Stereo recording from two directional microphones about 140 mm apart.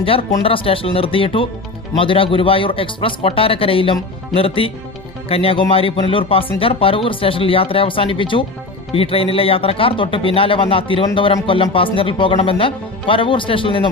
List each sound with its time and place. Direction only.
0.0 s speech: 40° left (ahead or behind)